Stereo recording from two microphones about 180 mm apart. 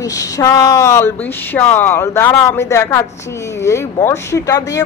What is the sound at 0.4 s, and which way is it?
Speech, 20° left (ahead or behind).